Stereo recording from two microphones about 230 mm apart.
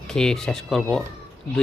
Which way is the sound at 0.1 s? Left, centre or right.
Centre.